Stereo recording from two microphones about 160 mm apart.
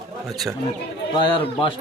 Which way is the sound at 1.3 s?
35° left (ahead or behind).